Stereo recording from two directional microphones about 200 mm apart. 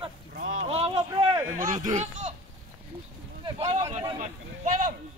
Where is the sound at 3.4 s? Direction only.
30° right (ahead or behind).